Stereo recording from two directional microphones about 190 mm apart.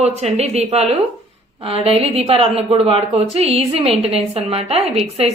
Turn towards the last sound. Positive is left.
turn(degrees=-35)  # may be behind; listen again after turning